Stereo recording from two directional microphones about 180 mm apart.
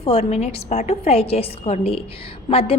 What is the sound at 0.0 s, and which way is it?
A woman's voice, 35° left (ahead or behind).